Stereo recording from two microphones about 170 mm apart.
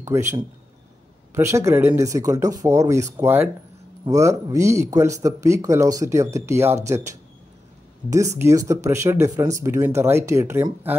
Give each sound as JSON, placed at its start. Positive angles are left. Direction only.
{"t": 0.0, "sound": "speech", "side_deg": -15}
{"t": 1.3, "sound": "speech", "side_deg": -15}